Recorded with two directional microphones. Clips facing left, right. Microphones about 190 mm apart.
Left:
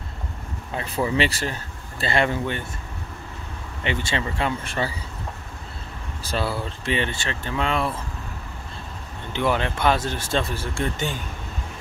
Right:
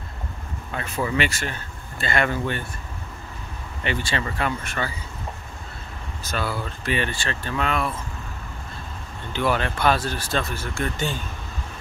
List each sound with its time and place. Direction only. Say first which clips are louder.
0.7 s speech: left 2 dB; 30° left (ahead or behind)
3.8 s speech: even; 20° left (ahead or behind)
6.2 s speech: left 2 dB; 30° left (ahead or behind)
9.3 s speech: even; 20° left (ahead or behind)